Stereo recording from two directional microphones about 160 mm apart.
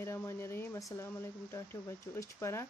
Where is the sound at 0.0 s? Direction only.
15° left (ahead or behind).